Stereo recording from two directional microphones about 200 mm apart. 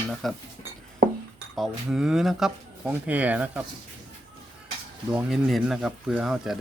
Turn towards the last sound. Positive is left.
turn(degrees=0)  # may be behind; listen again after turning